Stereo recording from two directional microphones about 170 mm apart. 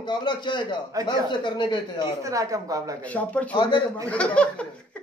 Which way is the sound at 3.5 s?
25° left (ahead or behind).